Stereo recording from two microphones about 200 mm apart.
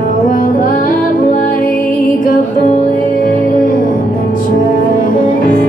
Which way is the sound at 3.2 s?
45° left (ahead or behind).